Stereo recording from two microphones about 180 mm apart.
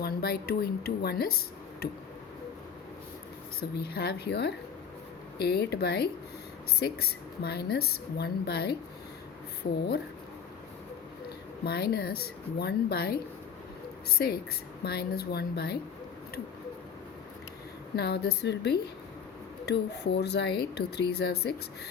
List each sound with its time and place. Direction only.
0.0 s speech: 60° left (ahead or behind)
3.6 s a woman's voice: 60° left (ahead or behind)
9.7 s speech: 70° left (ahead or behind)
11.6 s a woman's voice: 60° left (ahead or behind)
14.2 s a woman's voice: 65° left (ahead or behind)
17.9 s speech: 65° left (ahead or behind)